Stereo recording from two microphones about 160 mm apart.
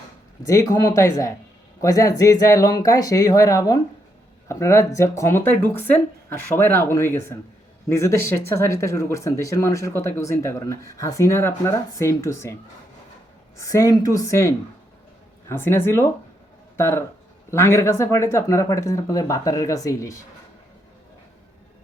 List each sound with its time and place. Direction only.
0.4 s speech: 20° left (ahead or behind)
13.6 s speech: 20° left (ahead or behind)